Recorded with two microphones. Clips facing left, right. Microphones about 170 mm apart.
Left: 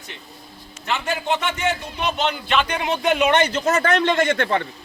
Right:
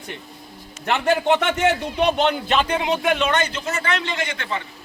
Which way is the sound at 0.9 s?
60° right (ahead or behind).